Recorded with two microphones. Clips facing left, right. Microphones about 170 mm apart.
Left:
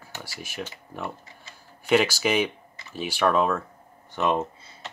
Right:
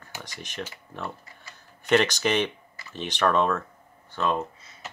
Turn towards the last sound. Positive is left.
turn(degrees=25)  # may be behind; listen again after turning